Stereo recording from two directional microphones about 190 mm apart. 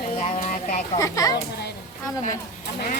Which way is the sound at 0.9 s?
15° left (ahead or behind).